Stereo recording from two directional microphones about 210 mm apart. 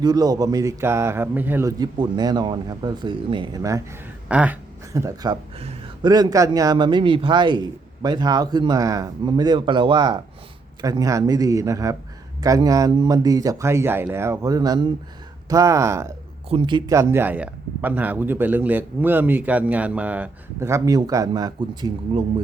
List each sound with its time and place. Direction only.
0.0 s speech: 20° right (ahead or behind)